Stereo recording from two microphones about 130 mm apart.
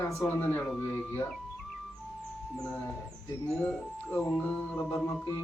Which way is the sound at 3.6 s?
10° left (ahead or behind).